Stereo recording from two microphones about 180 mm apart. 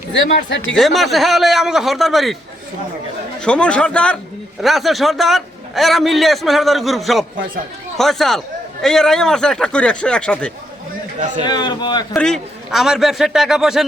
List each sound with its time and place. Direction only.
0.3 s speech: 85° left
0.8 s a man's voice: centre (ahead or behind)
3.4 s a man's voice: 5° left (ahead or behind)
11.4 s a man's voice: 25° left (ahead or behind)
12.1 s a man's voice: 5° left (ahead or behind)